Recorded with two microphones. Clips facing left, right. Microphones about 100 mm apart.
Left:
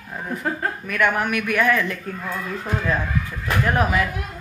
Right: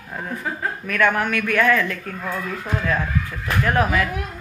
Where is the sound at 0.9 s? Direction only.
15° left (ahead or behind).